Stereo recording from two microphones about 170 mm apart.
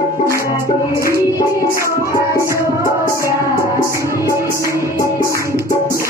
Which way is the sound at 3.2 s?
15° left (ahead or behind).